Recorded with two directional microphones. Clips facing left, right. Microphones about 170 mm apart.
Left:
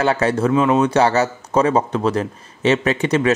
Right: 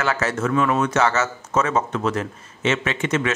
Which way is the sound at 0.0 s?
30° left (ahead or behind).